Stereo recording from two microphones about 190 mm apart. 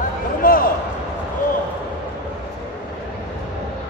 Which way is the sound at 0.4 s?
50° left (ahead or behind).